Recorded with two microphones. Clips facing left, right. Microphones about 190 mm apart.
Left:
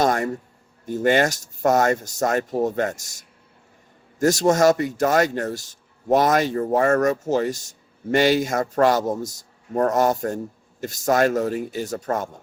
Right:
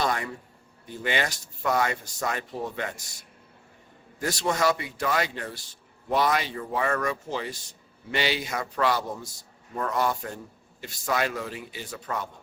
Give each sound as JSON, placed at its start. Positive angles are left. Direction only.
{"t": 0.0, "sound": "speech", "side_deg": 45}